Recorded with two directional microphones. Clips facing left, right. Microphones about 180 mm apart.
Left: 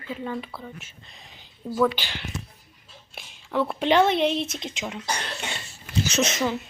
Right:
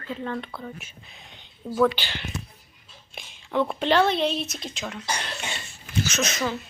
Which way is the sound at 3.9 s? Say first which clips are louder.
Left 2 dB; 20° left (ahead or behind).